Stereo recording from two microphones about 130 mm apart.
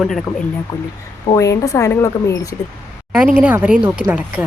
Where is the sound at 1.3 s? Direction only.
25° left (ahead or behind).